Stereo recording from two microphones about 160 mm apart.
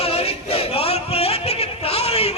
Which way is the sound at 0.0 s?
40° left (ahead or behind).